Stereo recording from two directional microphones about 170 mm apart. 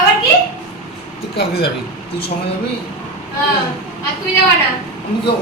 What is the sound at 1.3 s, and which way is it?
Speech, 70° left (ahead or behind).